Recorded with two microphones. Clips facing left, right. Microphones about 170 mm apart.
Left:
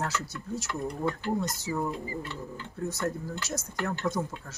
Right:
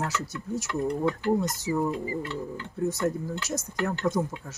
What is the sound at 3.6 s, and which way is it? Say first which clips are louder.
Speech: right 3 dB; 15° right (ahead or behind).